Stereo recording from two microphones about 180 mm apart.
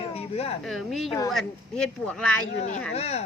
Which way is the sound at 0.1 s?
35° left (ahead or behind).